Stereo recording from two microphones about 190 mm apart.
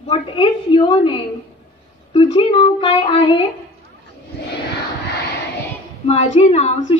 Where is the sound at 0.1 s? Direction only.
25° left (ahead or behind).